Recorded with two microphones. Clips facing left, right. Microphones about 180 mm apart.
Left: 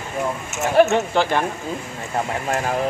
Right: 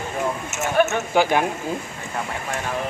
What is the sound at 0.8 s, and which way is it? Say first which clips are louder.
Speech: left 5 dB; 30° left (ahead or behind).